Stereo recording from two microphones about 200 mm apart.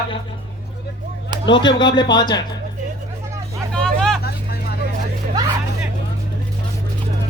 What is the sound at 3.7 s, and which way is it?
Vehicle, 5° left (ahead or behind).